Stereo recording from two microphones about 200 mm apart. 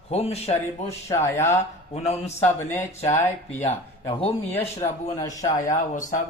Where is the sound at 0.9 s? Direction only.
15° left (ahead or behind).